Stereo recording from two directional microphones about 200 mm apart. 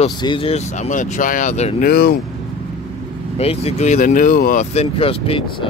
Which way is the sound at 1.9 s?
50° left (ahead or behind).